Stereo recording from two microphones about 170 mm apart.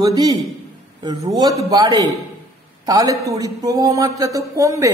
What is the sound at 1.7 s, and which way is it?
A man's voice, 25° right (ahead or behind).